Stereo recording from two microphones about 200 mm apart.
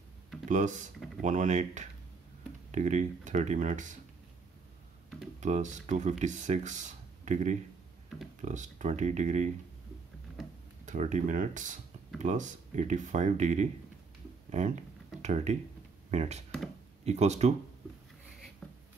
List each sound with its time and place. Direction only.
0.5 s speech: 40° right (ahead or behind)
5.4 s speech: 35° right (ahead or behind)
10.9 s speech: 35° right (ahead or behind)
18.6 s writing: 5° left (ahead or behind)